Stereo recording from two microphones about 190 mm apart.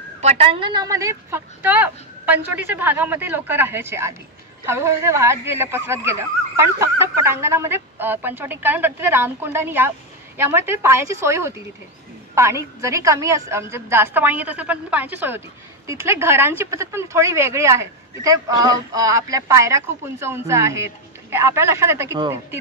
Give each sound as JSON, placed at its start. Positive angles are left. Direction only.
{"t": 0.2, "sound": "speech", "side_deg": -30}